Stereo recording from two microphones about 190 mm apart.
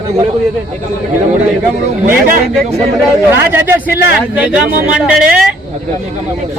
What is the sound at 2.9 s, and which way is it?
A man's voice, 15° right (ahead or behind).